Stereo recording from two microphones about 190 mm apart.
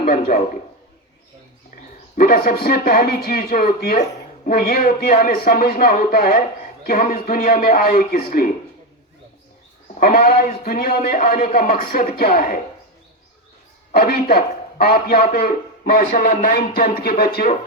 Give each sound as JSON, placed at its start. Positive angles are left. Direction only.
{"t": 2.1, "sound": "a man's voice", "side_deg": 50}
{"t": 9.9, "sound": "a man's voice", "side_deg": 55}
{"t": 13.9, "sound": "a man's voice", "side_deg": 55}